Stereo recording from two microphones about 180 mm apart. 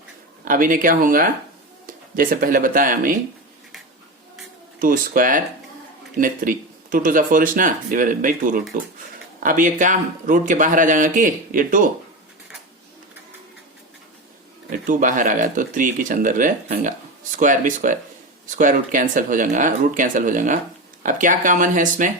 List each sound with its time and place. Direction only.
0.4 s speech: 50° right (ahead or behind)
4.8 s speech: 50° right (ahead or behind)
14.7 s speech: 45° right (ahead or behind)